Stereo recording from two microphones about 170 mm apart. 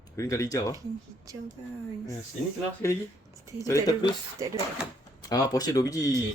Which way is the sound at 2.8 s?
15° left (ahead or behind).